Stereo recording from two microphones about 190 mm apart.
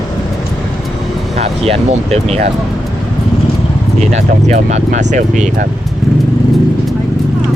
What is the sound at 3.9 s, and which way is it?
Speech, 35° right (ahead or behind).